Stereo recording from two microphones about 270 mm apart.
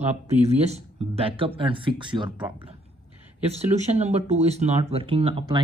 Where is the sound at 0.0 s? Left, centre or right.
Right.